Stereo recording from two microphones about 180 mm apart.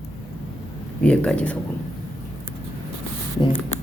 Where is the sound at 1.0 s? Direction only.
5° left (ahead or behind).